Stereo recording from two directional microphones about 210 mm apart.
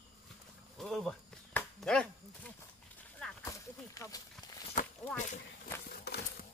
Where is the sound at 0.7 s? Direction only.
Centre (ahead or behind).